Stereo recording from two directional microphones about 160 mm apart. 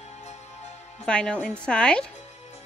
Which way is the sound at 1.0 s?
5° left (ahead or behind).